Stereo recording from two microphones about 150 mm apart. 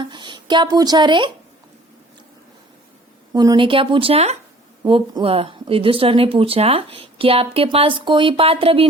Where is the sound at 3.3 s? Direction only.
25° right (ahead or behind).